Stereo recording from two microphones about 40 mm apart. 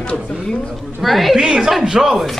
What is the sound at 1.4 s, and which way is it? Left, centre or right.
Speech, centre.